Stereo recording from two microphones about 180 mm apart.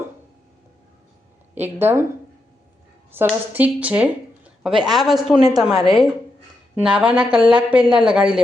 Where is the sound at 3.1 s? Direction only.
10° right (ahead or behind).